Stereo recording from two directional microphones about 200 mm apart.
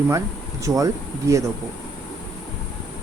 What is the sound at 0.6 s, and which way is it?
Speech, 15° right (ahead or behind).